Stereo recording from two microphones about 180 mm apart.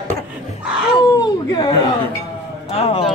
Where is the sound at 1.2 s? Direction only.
25° left (ahead or behind).